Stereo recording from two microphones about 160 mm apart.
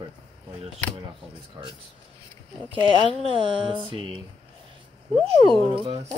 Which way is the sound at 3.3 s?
30° right (ahead or behind).